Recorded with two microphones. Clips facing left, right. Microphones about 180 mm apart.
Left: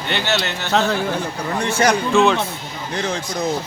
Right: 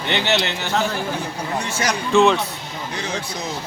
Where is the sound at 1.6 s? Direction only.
60° left (ahead or behind).